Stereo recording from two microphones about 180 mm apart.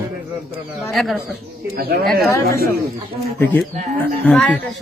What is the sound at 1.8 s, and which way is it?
Speech, 60° right (ahead or behind).